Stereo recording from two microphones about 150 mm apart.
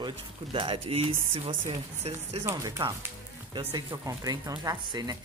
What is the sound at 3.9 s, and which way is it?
Speech, 25° right (ahead or behind).